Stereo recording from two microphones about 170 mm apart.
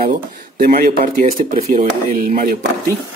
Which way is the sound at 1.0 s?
40° right (ahead or behind).